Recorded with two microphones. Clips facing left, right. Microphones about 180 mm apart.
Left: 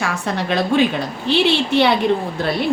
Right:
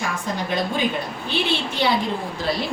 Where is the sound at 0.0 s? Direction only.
75° left (ahead or behind).